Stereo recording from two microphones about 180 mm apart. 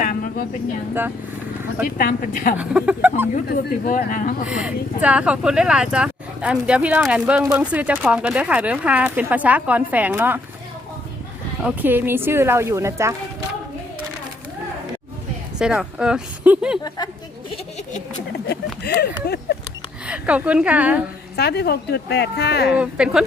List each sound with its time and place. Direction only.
0.0 s vehicle: 50° left (ahead or behind)
2.0 s a woman's voice: 55° left (ahead or behind)
2.6 s speech: 5° right (ahead or behind)
3.8 s a woman's voice: 50° left (ahead or behind)
4.4 s speech: 5° right (ahead or behind)
11.6 s speech: 10° right (ahead or behind)
15.5 s speech: 5° right (ahead or behind)
18.4 s speech: 60° left (ahead or behind)
20.1 s speech: 5° right (ahead or behind)
21.3 s speech: 65° left (ahead or behind)
22.7 s speech: 5° right (ahead or behind)